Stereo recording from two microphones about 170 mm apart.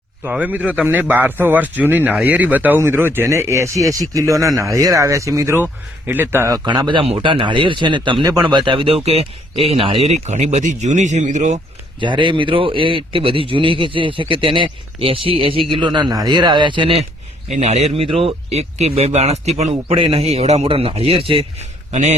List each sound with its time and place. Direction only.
0.3 s a man's voice: 10° right (ahead or behind)
6.7 s a man's voice: 25° right (ahead or behind); by 11.6 s 45° right (ahead or behind)
11.9 s a man's voice: 30° right (ahead or behind)
17.5 s a man's voice: 40° right (ahead or behind)